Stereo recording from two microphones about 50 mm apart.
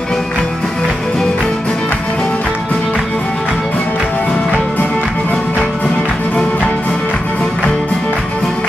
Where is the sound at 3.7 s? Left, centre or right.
Left.